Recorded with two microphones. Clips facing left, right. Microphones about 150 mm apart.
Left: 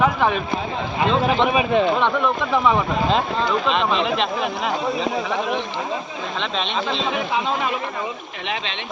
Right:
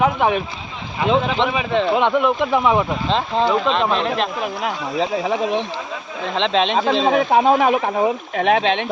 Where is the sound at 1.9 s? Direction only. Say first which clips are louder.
Right 3 dB; 15° right (ahead or behind).